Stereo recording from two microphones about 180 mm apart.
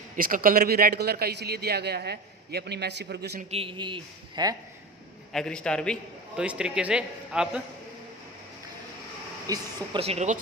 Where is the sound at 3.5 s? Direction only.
30° right (ahead or behind).